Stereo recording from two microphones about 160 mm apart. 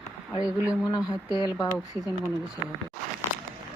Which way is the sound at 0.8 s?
25° left (ahead or behind).